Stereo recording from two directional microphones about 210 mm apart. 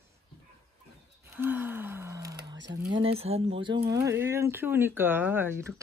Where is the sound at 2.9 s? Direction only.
25° right (ahead or behind).